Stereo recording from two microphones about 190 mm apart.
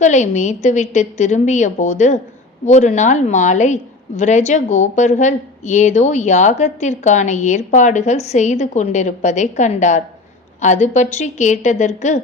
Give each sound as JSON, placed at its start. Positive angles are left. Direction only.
{"t": 0.0, "sound": "a woman's voice", "side_deg": 40}